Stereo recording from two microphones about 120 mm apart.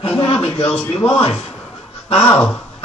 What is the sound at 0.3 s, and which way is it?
Speech, 50° left (ahead or behind).